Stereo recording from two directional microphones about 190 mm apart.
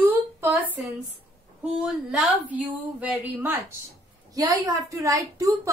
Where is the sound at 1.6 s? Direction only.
5° right (ahead or behind).